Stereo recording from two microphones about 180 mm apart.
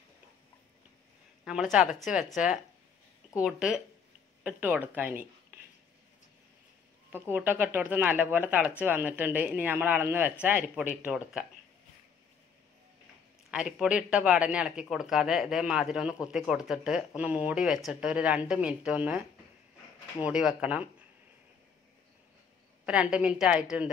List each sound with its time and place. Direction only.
1.4 s speech: 5° right (ahead or behind)
3.3 s speech: 5° right (ahead or behind)
7.2 s speech: 10° right (ahead or behind)
13.5 s speech: 5° right (ahead or behind)
20.2 s speech: 5° right (ahead or behind)
22.8 s speech: 5° right (ahead or behind)